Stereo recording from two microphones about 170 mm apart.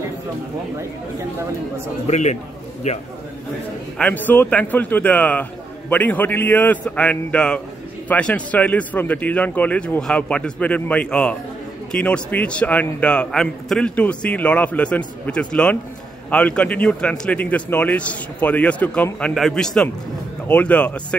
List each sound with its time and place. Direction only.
2.0 s a man's voice: 45° left (ahead or behind)
4.0 s a man's voice: 10° left (ahead or behind)